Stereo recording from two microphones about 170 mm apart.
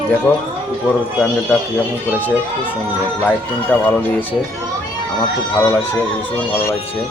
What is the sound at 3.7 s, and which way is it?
Speech, 10° left (ahead or behind).